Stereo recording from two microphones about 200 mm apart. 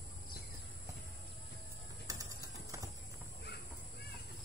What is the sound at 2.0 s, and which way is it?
Typing, 15° right (ahead or behind).